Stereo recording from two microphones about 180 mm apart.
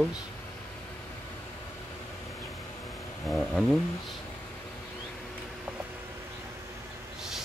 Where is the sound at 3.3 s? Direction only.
Centre (ahead or behind).